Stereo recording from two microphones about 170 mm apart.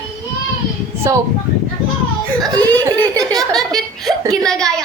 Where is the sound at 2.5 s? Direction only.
20° right (ahead or behind).